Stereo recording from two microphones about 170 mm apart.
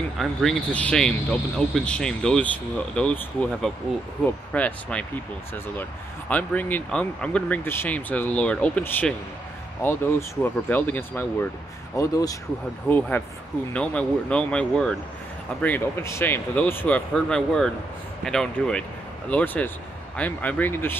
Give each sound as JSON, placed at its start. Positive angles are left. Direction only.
{"t": 0.2, "sound": "speech", "side_deg": 0}